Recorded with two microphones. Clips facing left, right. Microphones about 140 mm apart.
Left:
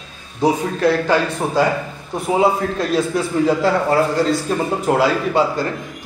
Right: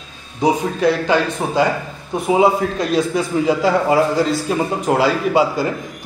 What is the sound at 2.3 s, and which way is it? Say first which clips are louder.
A man's voice: right 2 dB; centre (ahead or behind).